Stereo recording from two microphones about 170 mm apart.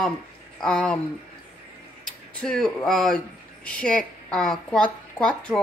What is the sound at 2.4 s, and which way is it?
A woman's voice, 5° left (ahead or behind).